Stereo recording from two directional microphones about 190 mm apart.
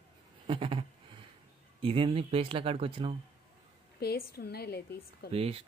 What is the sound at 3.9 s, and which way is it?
A woman's voice, 55° left (ahead or behind).